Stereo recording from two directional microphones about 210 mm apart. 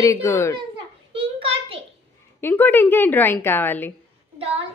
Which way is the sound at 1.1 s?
25° right (ahead or behind).